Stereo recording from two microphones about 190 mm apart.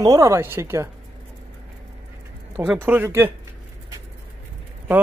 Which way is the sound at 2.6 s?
10° right (ahead or behind).